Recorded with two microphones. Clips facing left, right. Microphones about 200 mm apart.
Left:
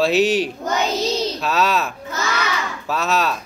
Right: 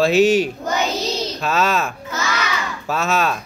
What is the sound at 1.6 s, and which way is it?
Speech, 50° right (ahead or behind).